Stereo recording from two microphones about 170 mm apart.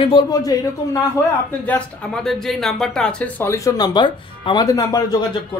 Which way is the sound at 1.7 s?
Centre (ahead or behind).